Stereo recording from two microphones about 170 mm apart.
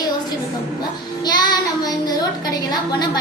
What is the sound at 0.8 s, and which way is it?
Speech, 25° left (ahead or behind).